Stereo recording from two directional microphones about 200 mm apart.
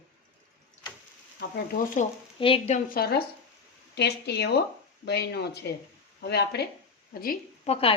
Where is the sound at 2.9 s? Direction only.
50° left (ahead or behind).